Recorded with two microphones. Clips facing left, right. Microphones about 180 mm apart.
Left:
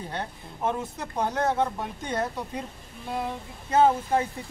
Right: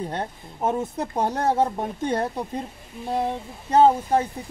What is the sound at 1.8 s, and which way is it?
Speech, 55° right (ahead or behind).